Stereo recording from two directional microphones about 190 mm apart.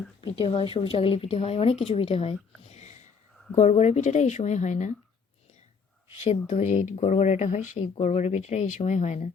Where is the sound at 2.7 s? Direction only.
35° left (ahead or behind).